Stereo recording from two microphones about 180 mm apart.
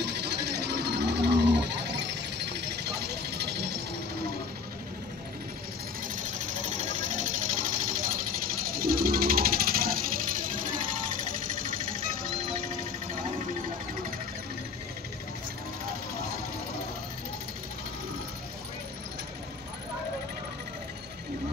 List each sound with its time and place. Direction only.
0.0 s sewing machine: 70° right (ahead or behind)
6.0 s sewing machine: 45° right (ahead or behind)